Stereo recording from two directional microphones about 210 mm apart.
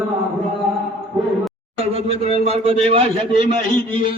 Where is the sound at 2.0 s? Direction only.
30° right (ahead or behind).